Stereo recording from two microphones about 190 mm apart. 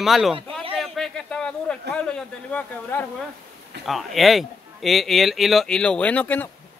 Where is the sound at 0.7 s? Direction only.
Centre (ahead or behind).